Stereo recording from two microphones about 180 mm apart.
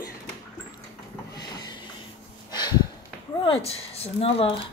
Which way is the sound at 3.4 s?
30° left (ahead or behind).